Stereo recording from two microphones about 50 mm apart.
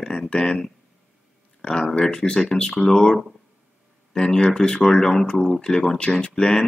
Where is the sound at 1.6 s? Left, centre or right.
Centre.